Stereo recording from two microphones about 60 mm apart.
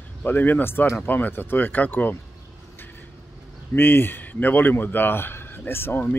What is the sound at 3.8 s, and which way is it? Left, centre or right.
Speech, left.